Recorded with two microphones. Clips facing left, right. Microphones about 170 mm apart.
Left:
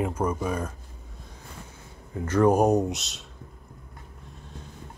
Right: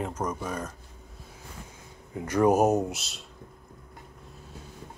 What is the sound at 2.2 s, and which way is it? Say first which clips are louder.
Speech: left 1 dB; 10° right (ahead or behind).